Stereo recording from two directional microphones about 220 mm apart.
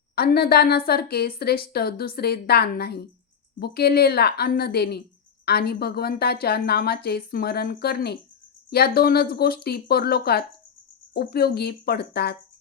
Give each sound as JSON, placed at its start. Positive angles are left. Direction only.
{"t": 0.2, "sound": "a woman's voice", "side_deg": 45}